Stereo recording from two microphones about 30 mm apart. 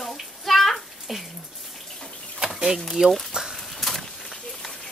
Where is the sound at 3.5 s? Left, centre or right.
Centre.